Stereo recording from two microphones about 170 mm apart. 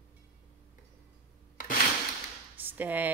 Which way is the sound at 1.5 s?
50° left (ahead or behind).